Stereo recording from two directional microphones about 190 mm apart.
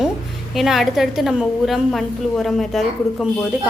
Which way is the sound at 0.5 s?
Centre (ahead or behind).